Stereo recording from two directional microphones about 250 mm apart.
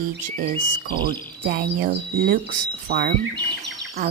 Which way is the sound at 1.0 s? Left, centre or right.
Right.